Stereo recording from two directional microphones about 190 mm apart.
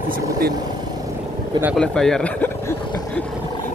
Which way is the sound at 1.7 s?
5° left (ahead or behind).